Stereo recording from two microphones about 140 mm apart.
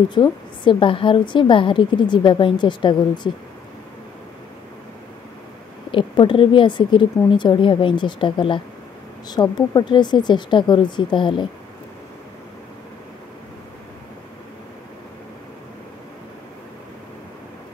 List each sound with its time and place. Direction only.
0.1 s a woman's voice: 35° left (ahead or behind)
5.9 s a woman's voice: 35° left (ahead or behind)